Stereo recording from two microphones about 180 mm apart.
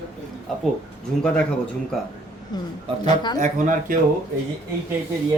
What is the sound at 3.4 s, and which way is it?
Speech, 50° right (ahead or behind).